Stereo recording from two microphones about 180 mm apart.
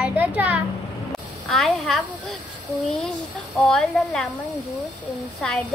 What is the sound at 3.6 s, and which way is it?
Speech, 5° left (ahead or behind).